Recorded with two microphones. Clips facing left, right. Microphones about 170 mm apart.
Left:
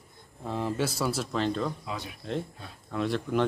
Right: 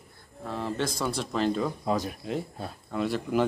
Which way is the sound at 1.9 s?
45° right (ahead or behind).